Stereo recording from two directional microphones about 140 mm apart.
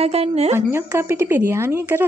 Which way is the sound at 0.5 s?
15° right (ahead or behind).